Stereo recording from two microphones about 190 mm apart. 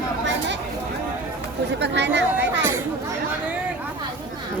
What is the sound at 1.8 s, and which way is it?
Speech, 70° right (ahead or behind).